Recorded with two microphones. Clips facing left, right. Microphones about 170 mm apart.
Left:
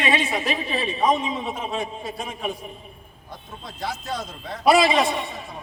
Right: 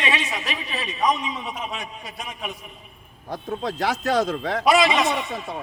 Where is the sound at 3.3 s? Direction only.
85° right.